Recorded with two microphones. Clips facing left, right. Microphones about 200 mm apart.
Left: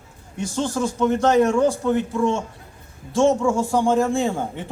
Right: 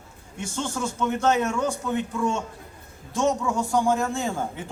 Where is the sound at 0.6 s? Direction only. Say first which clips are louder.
Left 6 dB; 35° left (ahead or behind).